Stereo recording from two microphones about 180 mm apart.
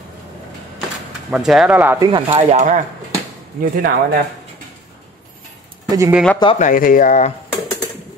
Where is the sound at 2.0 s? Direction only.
25° right (ahead or behind).